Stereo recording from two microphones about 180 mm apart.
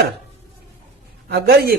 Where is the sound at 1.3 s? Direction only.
60° right (ahead or behind).